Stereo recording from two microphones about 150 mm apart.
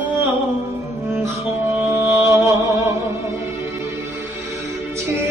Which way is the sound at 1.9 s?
15° right (ahead or behind).